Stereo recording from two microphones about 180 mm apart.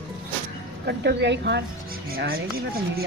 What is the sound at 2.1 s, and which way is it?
Speech, 55° right (ahead or behind).